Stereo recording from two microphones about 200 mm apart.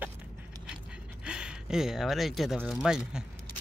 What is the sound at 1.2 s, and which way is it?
Speech, 5° right (ahead or behind).